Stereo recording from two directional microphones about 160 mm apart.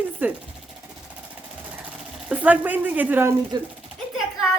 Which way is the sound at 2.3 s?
10° right (ahead or behind).